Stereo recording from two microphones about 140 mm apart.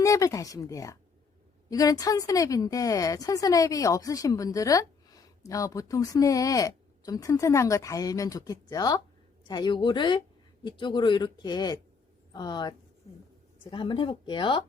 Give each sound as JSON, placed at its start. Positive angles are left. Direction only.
{"t": 0.0, "sound": "a woman's voice", "side_deg": 25}